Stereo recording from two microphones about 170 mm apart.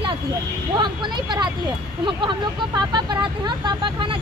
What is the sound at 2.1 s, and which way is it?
Speech, 25° right (ahead or behind).